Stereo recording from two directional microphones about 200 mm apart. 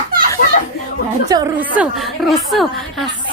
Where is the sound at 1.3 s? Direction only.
15° right (ahead or behind).